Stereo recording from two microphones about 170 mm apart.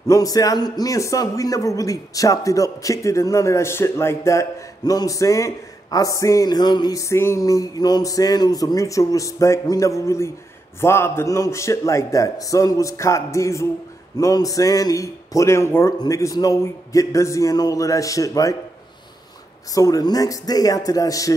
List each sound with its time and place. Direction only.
0.1 s a man's voice: 20° left (ahead or behind)
19.7 s a man's voice: 20° left (ahead or behind)